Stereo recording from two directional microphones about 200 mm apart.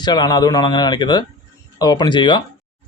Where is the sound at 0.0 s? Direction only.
20° left (ahead or behind).